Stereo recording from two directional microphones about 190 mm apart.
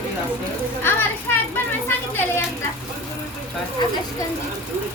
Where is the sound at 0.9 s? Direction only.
10° left (ahead or behind).